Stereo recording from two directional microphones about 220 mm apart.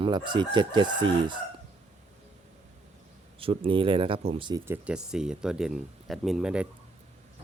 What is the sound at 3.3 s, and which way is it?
Speech, 25° right (ahead or behind).